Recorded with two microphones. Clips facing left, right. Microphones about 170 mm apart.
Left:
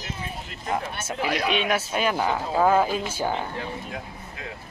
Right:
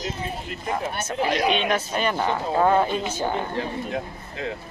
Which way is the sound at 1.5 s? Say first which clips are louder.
Right 1 dB; 5° left (ahead or behind).